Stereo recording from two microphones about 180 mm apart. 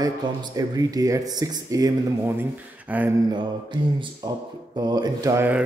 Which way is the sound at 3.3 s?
25° right (ahead or behind).